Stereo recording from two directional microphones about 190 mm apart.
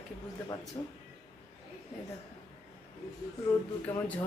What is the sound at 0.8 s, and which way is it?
Speech, 20° left (ahead or behind).